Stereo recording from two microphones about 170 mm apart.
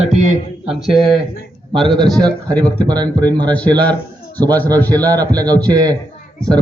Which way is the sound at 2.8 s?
25° right (ahead or behind).